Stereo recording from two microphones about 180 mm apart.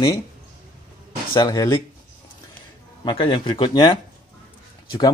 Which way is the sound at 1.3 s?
20° left (ahead or behind).